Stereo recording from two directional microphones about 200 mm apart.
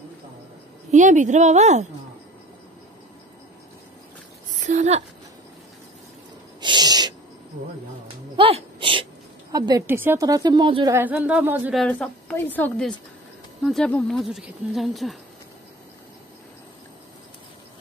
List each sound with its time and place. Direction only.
0.9 s a woman's voice: 40° right (ahead or behind)
4.6 s speech: 35° right (ahead or behind)
6.6 s owl: 20° right (ahead or behind)
8.4 s a woman's voice: 25° right (ahead or behind); by 11.7 s 10° right (ahead or behind)
11.7 s speech: 5° left (ahead or behind)